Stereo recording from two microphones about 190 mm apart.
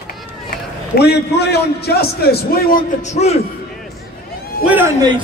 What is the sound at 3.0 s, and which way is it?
Speech, 35° left (ahead or behind).